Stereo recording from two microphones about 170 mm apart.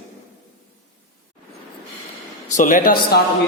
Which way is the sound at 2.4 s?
50° left (ahead or behind).